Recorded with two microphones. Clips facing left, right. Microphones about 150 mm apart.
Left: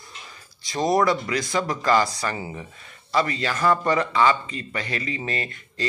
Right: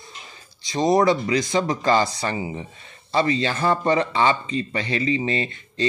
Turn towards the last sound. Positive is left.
turn(degrees=-25)  # may be behind; listen again after turning